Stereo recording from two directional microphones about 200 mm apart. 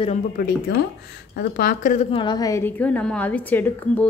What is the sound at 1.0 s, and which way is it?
Speech, 55° left (ahead or behind).